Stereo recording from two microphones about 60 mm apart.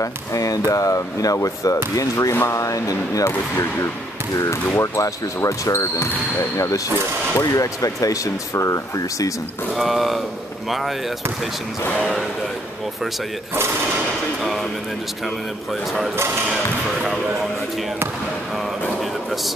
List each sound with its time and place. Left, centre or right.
0.0 s speech: left
3.3 s speech: left
4.9 s speech: left
7.4 s speech: left
9.8 s a man's voice: centre
12.0 s a man's voice: centre
14.4 s a man's voice: centre
18.9 s a sound: centre